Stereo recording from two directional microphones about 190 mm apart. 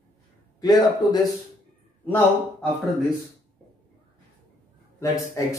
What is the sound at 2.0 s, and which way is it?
Speech, 10° left (ahead or behind).